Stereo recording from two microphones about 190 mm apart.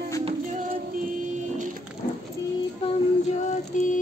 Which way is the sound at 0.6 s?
45° right (ahead or behind).